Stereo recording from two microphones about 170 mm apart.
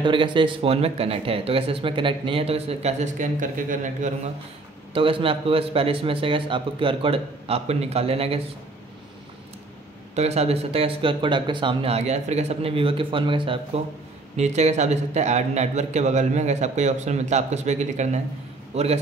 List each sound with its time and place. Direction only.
0.0 s speech: 30° right (ahead or behind); by 4.3 s 45° right (ahead or behind)
4.9 s speech: 30° right (ahead or behind)
10.1 s speech: 40° right (ahead or behind)
14.3 s a man's voice: 40° right (ahead or behind)